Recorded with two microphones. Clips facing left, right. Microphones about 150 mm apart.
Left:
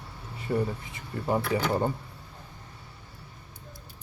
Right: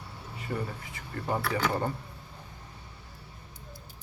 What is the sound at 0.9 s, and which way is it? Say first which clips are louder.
Speech: left 4 dB; 15° left (ahead or behind).